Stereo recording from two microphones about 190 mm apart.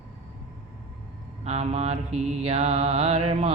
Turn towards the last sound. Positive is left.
turn(degrees=-30)  # may be behind; listen again after turning